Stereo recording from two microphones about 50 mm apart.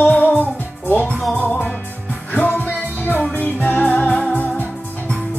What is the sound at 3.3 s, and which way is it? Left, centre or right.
Music, left.